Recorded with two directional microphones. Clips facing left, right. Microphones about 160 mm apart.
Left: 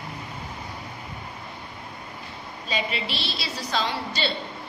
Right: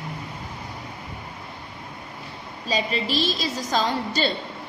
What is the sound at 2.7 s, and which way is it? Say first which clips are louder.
A woman's voice: right 5 dB; 40° right (ahead or behind).